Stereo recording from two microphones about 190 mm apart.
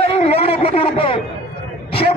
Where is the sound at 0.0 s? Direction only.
30° left (ahead or behind).